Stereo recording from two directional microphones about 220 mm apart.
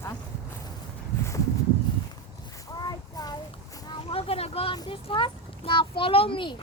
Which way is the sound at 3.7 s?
25° left (ahead or behind).